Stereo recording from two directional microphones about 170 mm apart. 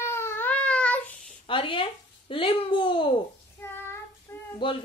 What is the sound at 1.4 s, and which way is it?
Speech, 30° left (ahead or behind).